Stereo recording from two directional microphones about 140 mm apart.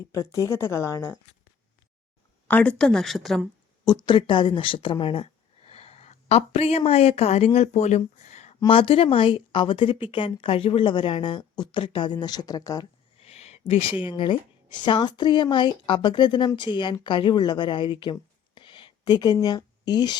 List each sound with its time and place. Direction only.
0.1 s speech: 25° left (ahead or behind)
2.5 s a woman's voice: 10° left (ahead or behind)
3.8 s speech: 30° left (ahead or behind); by 8.5 s 55° left (ahead or behind)
8.6 s a woman's voice: 40° left (ahead or behind)
13.1 s a sound: 50° left (ahead or behind)
14.8 s a woman's voice: 35° left (ahead or behind)